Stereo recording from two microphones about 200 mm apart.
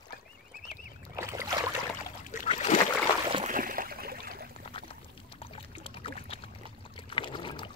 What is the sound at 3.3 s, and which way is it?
Boat, 40° right (ahead or behind).